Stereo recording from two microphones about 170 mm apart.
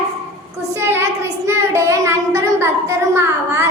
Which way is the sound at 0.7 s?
15° right (ahead or behind).